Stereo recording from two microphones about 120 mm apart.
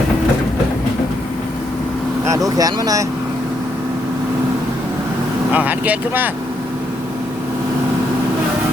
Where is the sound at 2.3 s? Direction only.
30° right (ahead or behind).